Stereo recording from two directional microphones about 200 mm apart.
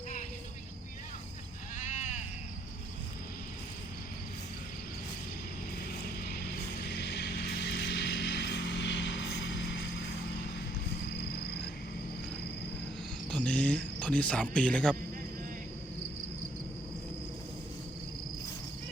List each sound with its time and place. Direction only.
1.8 s sheep: 35° left (ahead or behind)
6.8 s music: 55° left (ahead or behind)
11.1 s music: 55° left (ahead or behind)
13.3 s a sound: 5° left (ahead or behind)